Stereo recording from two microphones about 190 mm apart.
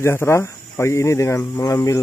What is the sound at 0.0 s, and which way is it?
Speech, 15° left (ahead or behind).